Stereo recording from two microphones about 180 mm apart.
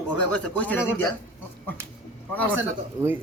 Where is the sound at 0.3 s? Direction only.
5° left (ahead or behind).